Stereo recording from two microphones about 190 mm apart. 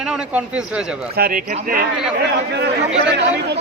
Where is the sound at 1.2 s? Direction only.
50° right (ahead or behind).